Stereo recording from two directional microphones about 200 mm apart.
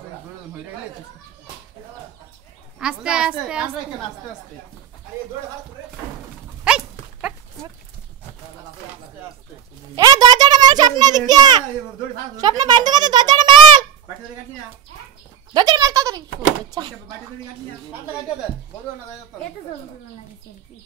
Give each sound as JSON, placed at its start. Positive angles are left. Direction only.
{"t": 2.8, "sound": "a woman's voice", "side_deg": -5}
{"t": 6.6, "sound": "dog", "side_deg": -5}
{"t": 9.9, "sound": "a child's voice", "side_deg": -20}
{"t": 15.5, "sound": "a child's voice", "side_deg": -20}